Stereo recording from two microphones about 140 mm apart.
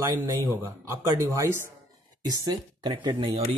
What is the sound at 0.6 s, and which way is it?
Speech, 20° right (ahead or behind).